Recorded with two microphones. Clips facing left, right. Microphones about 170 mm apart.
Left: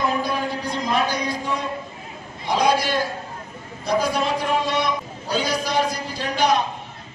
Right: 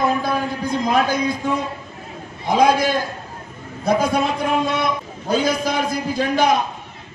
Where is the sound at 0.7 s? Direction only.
50° right (ahead or behind).